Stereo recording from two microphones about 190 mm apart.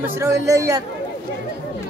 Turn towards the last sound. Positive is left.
turn(degrees=-15)  # may be behind; listen again after turning